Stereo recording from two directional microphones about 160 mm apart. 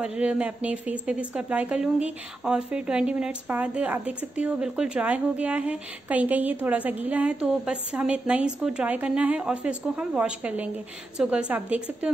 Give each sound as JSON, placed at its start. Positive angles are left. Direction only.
{"t": 0.0, "sound": "speech", "side_deg": -5}